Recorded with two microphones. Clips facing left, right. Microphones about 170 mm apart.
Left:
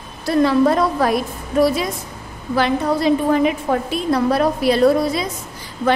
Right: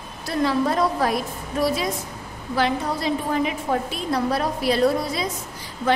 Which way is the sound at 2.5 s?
65° left (ahead or behind).